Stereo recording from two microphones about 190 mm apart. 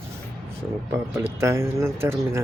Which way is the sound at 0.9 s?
15° right (ahead or behind).